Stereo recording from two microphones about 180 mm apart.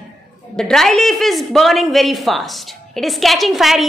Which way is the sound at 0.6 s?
Centre (ahead or behind).